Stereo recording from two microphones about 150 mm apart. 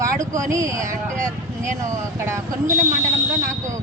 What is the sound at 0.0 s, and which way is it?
Speech, 20° right (ahead or behind).